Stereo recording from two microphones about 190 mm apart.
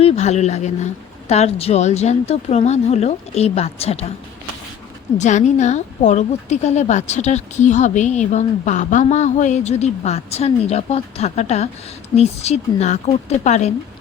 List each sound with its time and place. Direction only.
0.0 s a woman's voice: 35° left (ahead or behind)
5.1 s a woman's voice: 40° left (ahead or behind)